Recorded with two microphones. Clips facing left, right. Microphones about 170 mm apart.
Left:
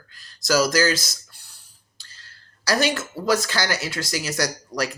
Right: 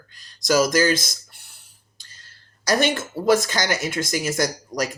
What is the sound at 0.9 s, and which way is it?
Speech, 50° right (ahead or behind).